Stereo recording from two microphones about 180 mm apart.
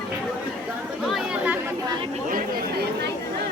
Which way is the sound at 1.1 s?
10° right (ahead or behind).